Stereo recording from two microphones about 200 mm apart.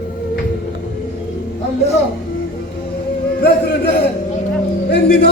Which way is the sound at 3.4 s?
55° left (ahead or behind).